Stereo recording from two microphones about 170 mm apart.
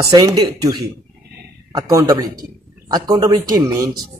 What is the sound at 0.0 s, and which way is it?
A man's voice, 20° right (ahead or behind).